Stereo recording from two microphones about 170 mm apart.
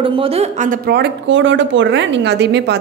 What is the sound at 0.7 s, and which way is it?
A woman's voice, 70° right (ahead or behind).